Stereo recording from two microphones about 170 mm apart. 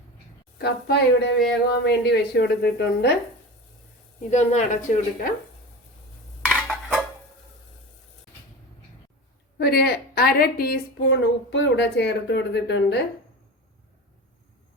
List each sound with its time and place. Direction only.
0.6 s speech: 75° left (ahead or behind)
4.3 s a woman's voice: 45° left (ahead or behind)
6.5 s a sound: centre (ahead or behind)
9.6 s a woman's voice: 65° left (ahead or behind); by 13.0 s 90° left